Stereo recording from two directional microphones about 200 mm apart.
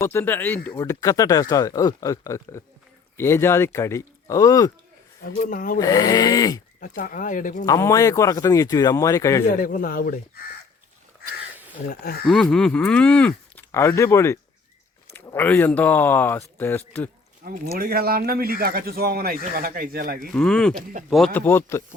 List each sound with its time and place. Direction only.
0.0 s speech: 10° left (ahead or behind)
5.2 s speech: 45° left (ahead or behind)
5.8 s speech: 15° left (ahead or behind)
6.7 s speech: 40° left (ahead or behind)
7.6 s speech: 15° left (ahead or behind)
9.6 s speech: 45° left (ahead or behind)
12.2 s speech: centre (ahead or behind)
17.4 s speech: 45° right (ahead or behind)
20.1 s speech: 5° left (ahead or behind)
20.9 s speech: 40° right (ahead or behind)
21.3 s speech: 10° left (ahead or behind)